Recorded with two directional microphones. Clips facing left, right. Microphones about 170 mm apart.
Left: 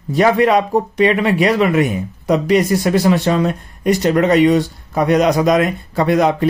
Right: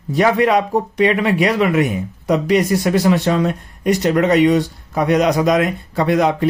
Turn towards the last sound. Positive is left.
turn(degrees=40)  # may be behind; listen again after turning